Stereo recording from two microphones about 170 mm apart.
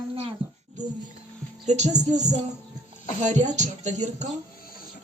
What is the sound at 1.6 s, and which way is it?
Speech, 40° right (ahead or behind).